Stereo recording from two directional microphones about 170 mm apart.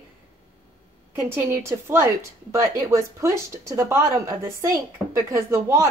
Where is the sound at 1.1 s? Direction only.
15° right (ahead or behind).